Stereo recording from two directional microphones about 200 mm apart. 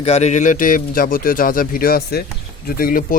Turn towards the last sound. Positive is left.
turn(degrees=45)  # may be behind; listen again after turning